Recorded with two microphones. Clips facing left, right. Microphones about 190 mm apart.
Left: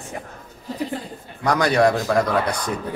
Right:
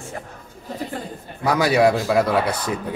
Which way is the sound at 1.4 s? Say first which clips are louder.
Right 1 dB; 5° right (ahead or behind).